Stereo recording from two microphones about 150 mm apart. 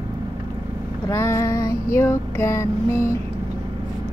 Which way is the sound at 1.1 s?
20° left (ahead or behind).